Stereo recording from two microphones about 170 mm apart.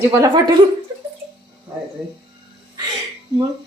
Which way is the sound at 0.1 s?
20° right (ahead or behind).